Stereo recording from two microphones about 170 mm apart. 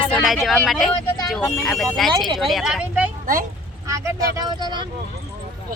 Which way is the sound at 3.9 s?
20° right (ahead or behind).